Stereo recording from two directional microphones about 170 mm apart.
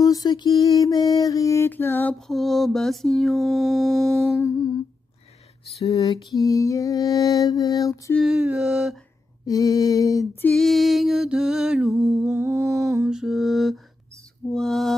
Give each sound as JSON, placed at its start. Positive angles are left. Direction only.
{"t": 0.0, "sound": "mantra", "side_deg": 20}
{"t": 4.4, "sound": "mantra", "side_deg": 15}
{"t": 5.9, "sound": "mantra", "side_deg": 20}
{"t": 8.1, "sound": "music", "side_deg": 0}
{"t": 9.4, "sound": "mantra", "side_deg": 20}
{"t": 10.5, "sound": "music", "side_deg": 0}